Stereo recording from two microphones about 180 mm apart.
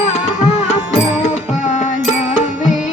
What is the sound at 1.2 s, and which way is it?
Music, 40° left (ahead or behind).